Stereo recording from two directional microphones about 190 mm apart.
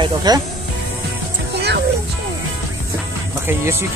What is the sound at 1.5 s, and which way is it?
Music, 60° right (ahead or behind).